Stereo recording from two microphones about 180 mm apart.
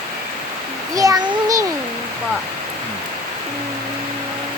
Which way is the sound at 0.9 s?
20° right (ahead or behind).